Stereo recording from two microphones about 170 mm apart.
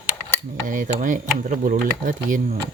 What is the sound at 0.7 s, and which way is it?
Speech, 50° right (ahead or behind).